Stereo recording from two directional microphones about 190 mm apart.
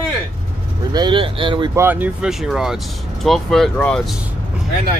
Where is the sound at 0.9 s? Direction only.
25° right (ahead or behind).